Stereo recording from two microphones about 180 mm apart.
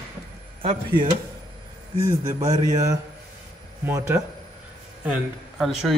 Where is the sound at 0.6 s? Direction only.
30° right (ahead or behind).